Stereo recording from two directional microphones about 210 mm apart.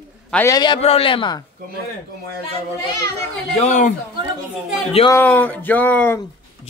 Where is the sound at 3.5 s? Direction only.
35° left (ahead or behind).